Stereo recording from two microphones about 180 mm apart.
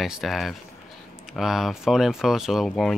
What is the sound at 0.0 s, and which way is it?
Speech, centre (ahead or behind).